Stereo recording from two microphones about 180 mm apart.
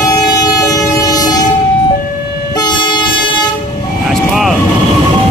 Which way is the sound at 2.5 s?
25° left (ahead or behind).